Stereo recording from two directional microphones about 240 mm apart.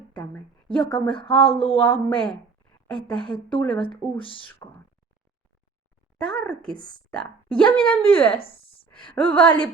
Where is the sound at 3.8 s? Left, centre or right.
Left.